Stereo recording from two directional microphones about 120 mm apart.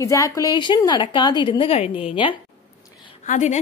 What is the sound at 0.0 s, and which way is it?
A woman's voice, 30° left (ahead or behind).